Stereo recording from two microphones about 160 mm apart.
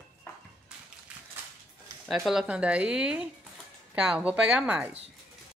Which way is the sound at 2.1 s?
Centre (ahead or behind).